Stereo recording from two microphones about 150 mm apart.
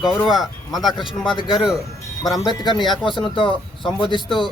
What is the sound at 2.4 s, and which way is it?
Speech, 30° left (ahead or behind).